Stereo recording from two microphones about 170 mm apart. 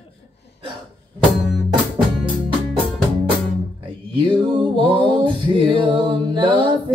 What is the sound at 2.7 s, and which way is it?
Music, centre (ahead or behind).